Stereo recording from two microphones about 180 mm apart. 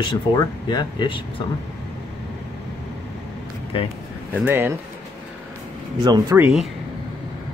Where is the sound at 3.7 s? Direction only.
30° left (ahead or behind).